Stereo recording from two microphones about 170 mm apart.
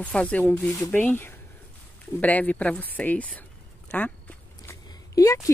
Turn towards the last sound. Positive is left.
turn(degrees=20)  # may be behind; listen again after turning